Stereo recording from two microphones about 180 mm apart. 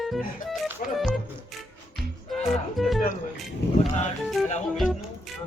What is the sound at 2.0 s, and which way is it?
Music, centre (ahead or behind).